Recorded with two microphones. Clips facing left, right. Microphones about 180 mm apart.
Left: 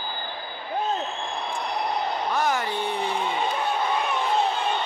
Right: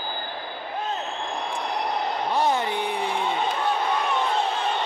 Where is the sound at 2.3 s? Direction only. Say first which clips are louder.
Right 3 dB; 30° right (ahead or behind).